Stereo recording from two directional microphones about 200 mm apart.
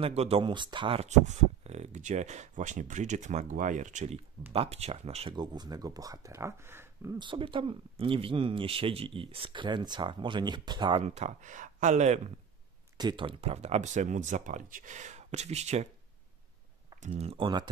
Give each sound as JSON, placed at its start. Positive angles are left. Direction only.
{"t": 0.0, "sound": "speech", "side_deg": -30}
{"t": 12.9, "sound": "speech", "side_deg": -20}
{"t": 17.0, "sound": "speech", "side_deg": -35}